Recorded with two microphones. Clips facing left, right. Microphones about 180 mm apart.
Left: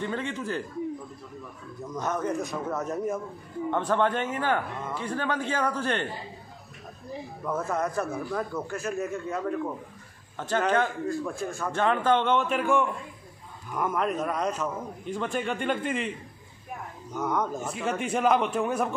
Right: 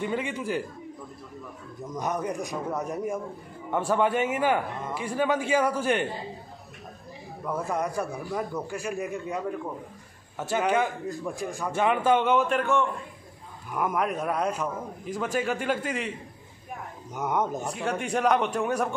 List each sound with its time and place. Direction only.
0.0 s a man's voice: 10° right (ahead or behind)
2.0 s a man's voice: 15° right (ahead or behind)
7.4 s a man's voice: 15° right (ahead or behind); by 12.8 s 10° left (ahead or behind)
13.7 s a man's voice: 10° right (ahead or behind)
17.1 s speech: 20° right (ahead or behind)
17.6 s a man's voice: centre (ahead or behind)